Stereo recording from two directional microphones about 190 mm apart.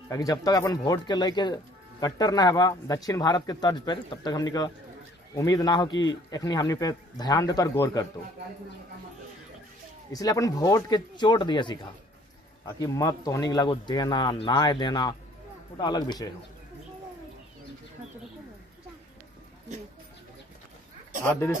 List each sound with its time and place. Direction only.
0.1 s speech: 20° left (ahead or behind)
10.1 s speech: 20° left (ahead or behind)
21.2 s speech: 15° left (ahead or behind)